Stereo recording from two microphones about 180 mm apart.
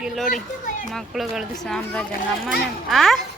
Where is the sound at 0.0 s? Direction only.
Centre (ahead or behind).